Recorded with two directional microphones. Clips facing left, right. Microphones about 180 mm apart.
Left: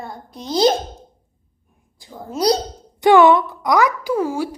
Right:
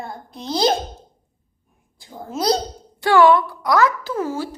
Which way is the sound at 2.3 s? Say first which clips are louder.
Left 3 dB; 15° left (ahead or behind).